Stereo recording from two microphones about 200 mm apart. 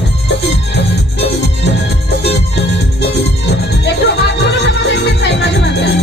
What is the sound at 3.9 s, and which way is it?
Music, 60° left (ahead or behind).